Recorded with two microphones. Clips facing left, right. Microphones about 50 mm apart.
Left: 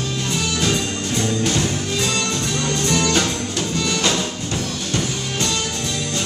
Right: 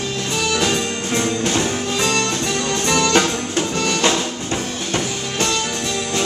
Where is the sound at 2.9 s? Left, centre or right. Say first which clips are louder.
Right 2 dB; right.